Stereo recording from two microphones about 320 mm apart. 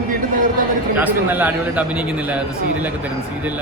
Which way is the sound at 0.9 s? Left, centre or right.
Centre.